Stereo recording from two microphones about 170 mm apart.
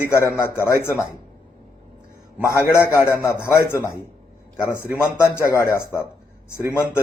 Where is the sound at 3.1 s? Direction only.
15° left (ahead or behind).